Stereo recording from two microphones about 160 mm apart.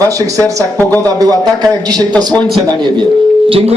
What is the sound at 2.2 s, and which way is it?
Speech, 25° right (ahead or behind).